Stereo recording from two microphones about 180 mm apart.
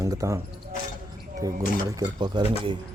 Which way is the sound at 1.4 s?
20° right (ahead or behind).